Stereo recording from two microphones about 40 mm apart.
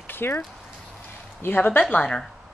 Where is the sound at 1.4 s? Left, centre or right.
Left.